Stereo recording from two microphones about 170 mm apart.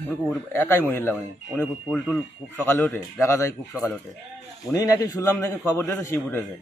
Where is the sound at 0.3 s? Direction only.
15° left (ahead or behind).